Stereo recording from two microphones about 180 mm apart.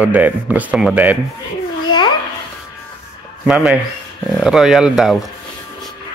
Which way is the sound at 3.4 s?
5° right (ahead or behind).